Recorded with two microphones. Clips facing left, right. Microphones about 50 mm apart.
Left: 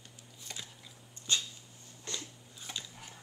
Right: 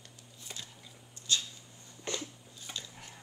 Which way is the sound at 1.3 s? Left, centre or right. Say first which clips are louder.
Right 1 dB; left.